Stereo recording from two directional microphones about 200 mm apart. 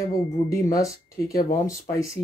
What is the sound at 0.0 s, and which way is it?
Speech, 15° left (ahead or behind).